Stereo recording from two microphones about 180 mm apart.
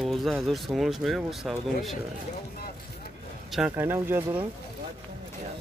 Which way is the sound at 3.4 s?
5° right (ahead or behind).